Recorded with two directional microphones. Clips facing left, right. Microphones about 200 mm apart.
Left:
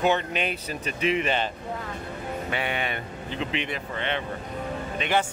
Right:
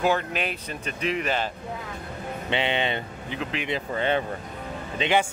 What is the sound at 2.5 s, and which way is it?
Speech, 25° right (ahead or behind).